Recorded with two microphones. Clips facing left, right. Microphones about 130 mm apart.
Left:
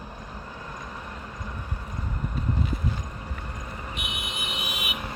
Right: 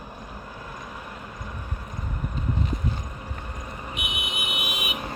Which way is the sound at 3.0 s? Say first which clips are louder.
Even; 10° right (ahead or behind).